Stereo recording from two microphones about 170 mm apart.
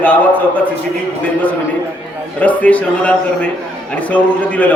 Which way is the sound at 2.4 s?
10° left (ahead or behind).